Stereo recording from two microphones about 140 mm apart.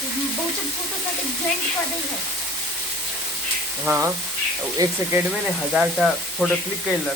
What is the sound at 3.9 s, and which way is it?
Speech, 20° right (ahead or behind).